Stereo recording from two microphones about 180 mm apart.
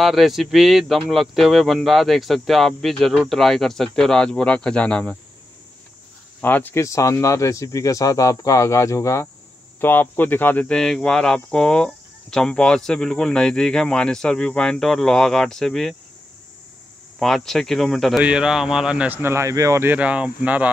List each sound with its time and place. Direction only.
0.0 s speech: centre (ahead or behind)
6.4 s speech: 10° left (ahead or behind)
17.2 s speech: centre (ahead or behind)